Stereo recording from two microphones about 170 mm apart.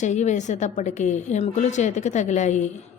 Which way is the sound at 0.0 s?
45° left (ahead or behind).